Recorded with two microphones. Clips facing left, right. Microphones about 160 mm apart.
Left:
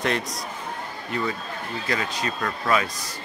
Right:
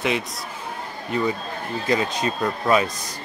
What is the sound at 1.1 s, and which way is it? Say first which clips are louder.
Speech: right 5 dB; 20° right (ahead or behind).